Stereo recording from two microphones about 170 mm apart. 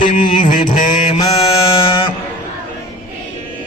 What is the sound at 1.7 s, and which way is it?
Mantra, 30° left (ahead or behind).